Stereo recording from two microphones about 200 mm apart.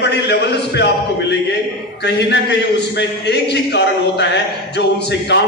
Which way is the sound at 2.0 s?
60° left (ahead or behind).